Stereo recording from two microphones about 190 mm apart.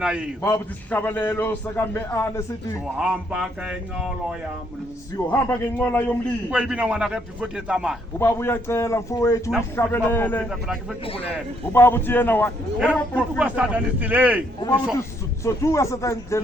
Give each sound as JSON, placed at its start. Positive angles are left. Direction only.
{"t": 0.0, "sound": "a man's voice", "side_deg": -5}
{"t": 0.4, "sound": "a man's voice", "side_deg": 10}
{"t": 3.0, "sound": "a man's voice", "side_deg": -5}
{"t": 5.1, "sound": "a man's voice", "side_deg": 10}
{"t": 6.5, "sound": "a man's voice", "side_deg": -5}
{"t": 8.2, "sound": "a man's voice", "side_deg": 10}
{"t": 10.5, "sound": "a man's voice", "side_deg": -5}
{"t": 11.0, "sound": "speech", "side_deg": 30}
{"t": 11.7, "sound": "a man's voice", "side_deg": 10}
{"t": 12.8, "sound": "speech", "side_deg": -5}
{"t": 15.4, "sound": "a man's voice", "side_deg": 15}